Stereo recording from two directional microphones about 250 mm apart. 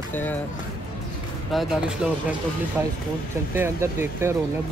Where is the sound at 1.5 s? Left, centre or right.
Centre.